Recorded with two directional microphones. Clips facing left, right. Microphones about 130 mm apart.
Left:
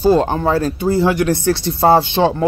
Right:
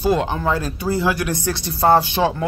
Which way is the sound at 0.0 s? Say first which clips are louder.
Left 5 dB; 35° left (ahead or behind).